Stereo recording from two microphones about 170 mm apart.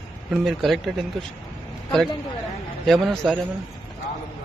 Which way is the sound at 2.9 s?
Centre (ahead or behind).